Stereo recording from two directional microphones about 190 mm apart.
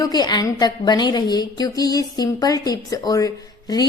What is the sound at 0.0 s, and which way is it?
A woman's voice, 20° left (ahead or behind).